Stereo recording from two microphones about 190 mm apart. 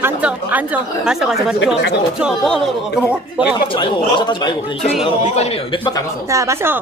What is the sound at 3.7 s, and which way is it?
A man's voice, 25° left (ahead or behind).